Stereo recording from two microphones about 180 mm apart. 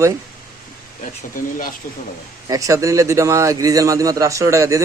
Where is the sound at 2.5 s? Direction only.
20° right (ahead or behind).